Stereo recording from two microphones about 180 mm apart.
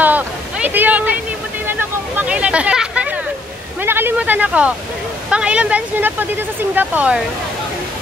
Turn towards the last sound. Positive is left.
turn(degrees=-10)  # may be behind; listen again after turning